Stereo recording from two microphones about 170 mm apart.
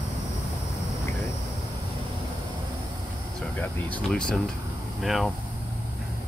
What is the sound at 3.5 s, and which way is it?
Speech, 10° left (ahead or behind).